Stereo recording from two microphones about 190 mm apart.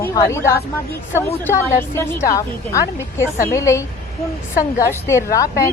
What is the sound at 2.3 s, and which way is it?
A woman's voice, 15° left (ahead or behind).